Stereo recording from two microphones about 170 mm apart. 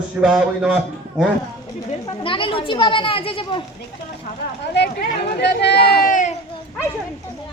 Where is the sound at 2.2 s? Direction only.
30° left (ahead or behind).